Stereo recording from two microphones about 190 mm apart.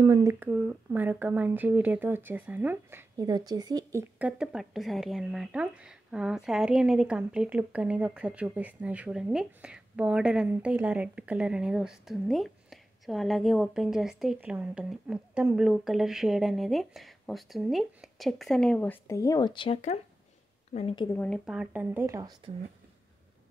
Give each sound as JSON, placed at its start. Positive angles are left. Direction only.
{"t": 0.0, "sound": "speech", "side_deg": -15}
{"t": 4.2, "sound": "a woman's voice", "side_deg": -5}
{"t": 21.1, "sound": "speech", "side_deg": 10}
{"t": 21.5, "sound": "speech", "side_deg": -5}